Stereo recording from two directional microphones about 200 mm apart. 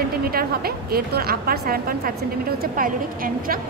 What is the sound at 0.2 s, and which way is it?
A woman's voice, 50° right (ahead or behind).